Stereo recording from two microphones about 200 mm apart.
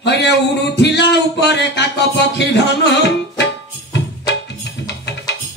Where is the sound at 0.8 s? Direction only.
60° left (ahead or behind).